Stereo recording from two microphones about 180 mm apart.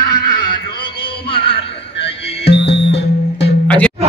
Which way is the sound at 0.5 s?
25° left (ahead or behind).